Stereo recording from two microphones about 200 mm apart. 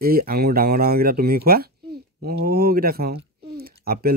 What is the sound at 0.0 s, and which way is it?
Speech, 50° right (ahead or behind).